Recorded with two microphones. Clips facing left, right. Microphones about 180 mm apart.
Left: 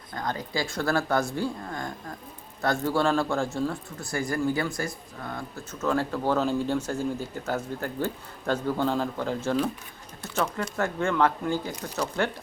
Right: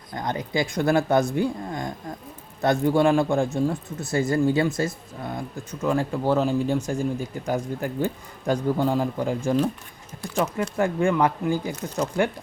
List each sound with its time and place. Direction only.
0.1 s speech: 20° right (ahead or behind)